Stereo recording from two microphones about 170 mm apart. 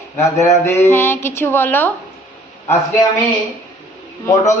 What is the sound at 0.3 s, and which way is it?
A man's voice, 15° left (ahead or behind).